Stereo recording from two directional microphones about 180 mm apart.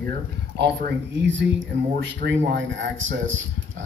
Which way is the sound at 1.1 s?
90° right.